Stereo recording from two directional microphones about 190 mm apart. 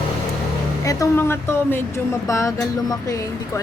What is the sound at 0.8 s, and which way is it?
Speech, 15° left (ahead or behind).